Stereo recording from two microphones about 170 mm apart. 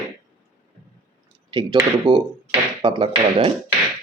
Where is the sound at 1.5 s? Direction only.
25° right (ahead or behind).